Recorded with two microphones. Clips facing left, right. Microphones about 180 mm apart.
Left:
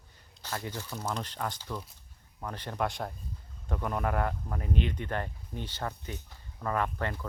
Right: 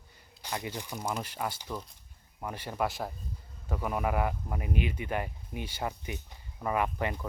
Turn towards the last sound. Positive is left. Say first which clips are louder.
# right 1 dB
turn(degrees=-15)  # may be behind; listen again after turning